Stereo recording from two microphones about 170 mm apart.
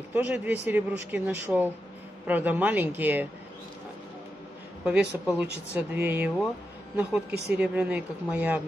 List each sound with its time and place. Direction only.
0.1 s speech: 10° right (ahead or behind)
4.8 s speech: 5° right (ahead or behind)
7.2 s speech: 70° right (ahead or behind)
7.5 s speech: 10° right (ahead or behind)